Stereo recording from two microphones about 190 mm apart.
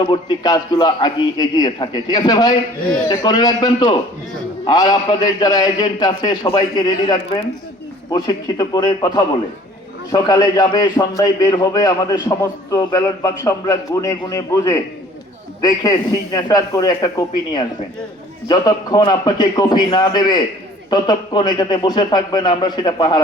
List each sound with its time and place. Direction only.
0.0 s a man's voice: 20° left (ahead or behind)